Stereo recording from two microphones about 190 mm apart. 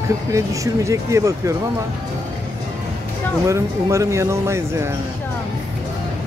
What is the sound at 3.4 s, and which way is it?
Speech, 15° right (ahead or behind).